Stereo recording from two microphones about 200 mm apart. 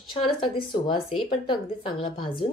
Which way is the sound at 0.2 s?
25° left (ahead or behind).